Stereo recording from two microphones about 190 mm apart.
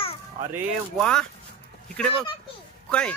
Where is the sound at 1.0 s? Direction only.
5° left (ahead or behind).